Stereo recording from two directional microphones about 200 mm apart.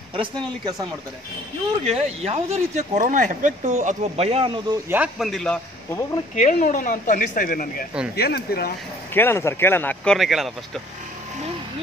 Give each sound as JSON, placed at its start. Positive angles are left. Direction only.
{"t": 0.1, "sound": "speech", "side_deg": -25}
{"t": 1.9, "sound": "speech", "side_deg": -35}
{"t": 4.8, "sound": "a man's voice", "side_deg": -10}
{"t": 6.3, "sound": "speech", "side_deg": 40}
{"t": 9.1, "sound": "speech", "side_deg": 10}